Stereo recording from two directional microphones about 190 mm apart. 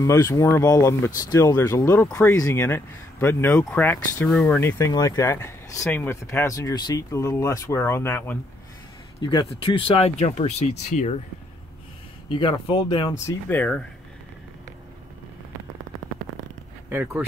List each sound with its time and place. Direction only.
0.0 s speech: 15° left (ahead or behind)
9.2 s speech: 25° left (ahead or behind)
12.3 s speech: 25° left (ahead or behind)
13.5 s speech: 5° left (ahead or behind)
16.9 s speech: 10° right (ahead or behind)